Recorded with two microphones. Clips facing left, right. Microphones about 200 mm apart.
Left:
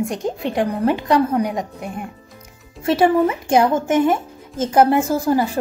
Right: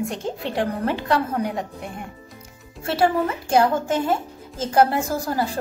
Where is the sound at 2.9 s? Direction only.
15° left (ahead or behind).